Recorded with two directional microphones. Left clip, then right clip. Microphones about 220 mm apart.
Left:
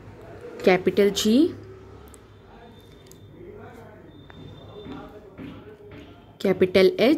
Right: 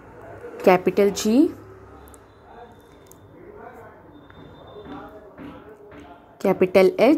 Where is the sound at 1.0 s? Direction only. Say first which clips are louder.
Right 1 dB; 20° left (ahead or behind).